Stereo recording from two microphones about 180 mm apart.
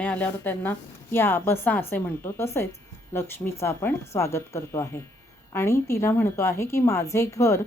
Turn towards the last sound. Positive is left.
turn(degrees=15)  # may be behind; listen again after turning